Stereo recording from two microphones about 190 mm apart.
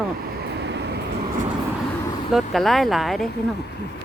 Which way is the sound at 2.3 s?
Centre (ahead or behind).